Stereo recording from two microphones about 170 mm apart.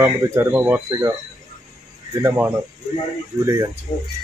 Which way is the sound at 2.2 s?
10° right (ahead or behind).